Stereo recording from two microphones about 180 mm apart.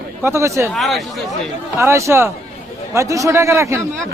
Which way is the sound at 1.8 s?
15° right (ahead or behind).